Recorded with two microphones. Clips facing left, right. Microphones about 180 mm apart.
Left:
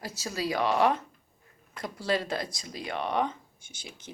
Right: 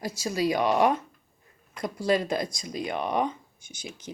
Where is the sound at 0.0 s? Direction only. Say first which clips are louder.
Right 6 dB; 15° right (ahead or behind).